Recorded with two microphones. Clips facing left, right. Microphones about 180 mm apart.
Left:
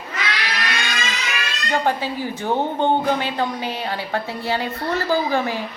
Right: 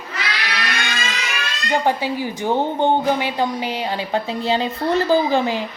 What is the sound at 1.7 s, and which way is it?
A woman's voice, 15° right (ahead or behind).